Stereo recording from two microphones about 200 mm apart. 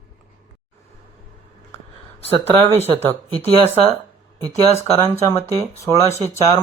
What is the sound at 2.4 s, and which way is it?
Speech, 10° left (ahead or behind).